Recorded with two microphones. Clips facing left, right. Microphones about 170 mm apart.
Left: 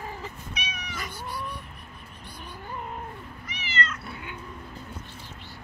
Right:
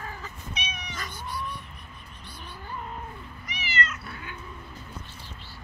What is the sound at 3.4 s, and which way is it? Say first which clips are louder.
Cat: even; 10° right (ahead or behind).